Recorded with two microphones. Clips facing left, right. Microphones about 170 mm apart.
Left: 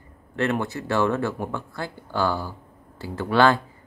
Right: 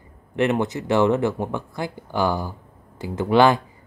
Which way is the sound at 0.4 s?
20° right (ahead or behind).